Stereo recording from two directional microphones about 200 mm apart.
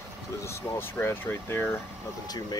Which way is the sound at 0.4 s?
15° left (ahead or behind).